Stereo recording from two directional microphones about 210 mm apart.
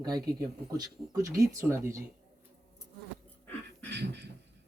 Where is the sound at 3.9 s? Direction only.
55° right (ahead or behind).